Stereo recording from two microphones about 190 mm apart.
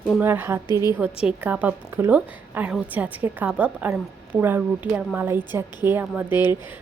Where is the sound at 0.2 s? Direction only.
10° right (ahead or behind).